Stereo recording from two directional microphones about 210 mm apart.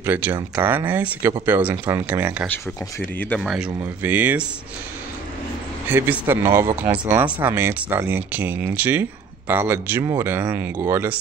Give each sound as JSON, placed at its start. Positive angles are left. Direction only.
{"t": 0.0, "sound": "speech", "side_deg": -10}
{"t": 3.2, "sound": "speech", "side_deg": 5}
{"t": 5.9, "sound": "speech", "side_deg": -10}